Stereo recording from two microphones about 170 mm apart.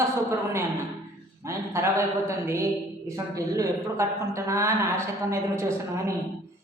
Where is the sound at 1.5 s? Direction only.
15° right (ahead or behind).